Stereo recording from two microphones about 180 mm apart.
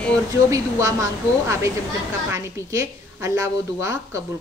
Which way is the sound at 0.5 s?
15° right (ahead or behind).